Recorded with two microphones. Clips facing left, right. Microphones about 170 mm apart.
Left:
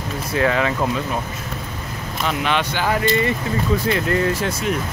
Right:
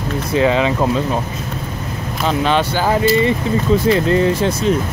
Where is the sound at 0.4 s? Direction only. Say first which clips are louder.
Right 4 dB; 20° right (ahead or behind).